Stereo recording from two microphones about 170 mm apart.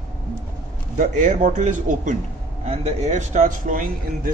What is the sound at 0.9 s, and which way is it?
A man's voice, 50° right (ahead or behind).